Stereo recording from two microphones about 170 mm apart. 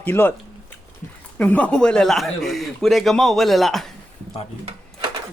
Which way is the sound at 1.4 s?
10° left (ahead or behind).